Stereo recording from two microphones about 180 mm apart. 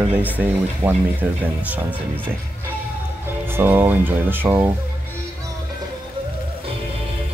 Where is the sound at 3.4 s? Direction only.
10° right (ahead or behind).